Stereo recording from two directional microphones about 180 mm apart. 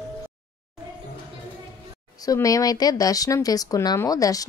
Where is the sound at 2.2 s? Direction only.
20° left (ahead or behind).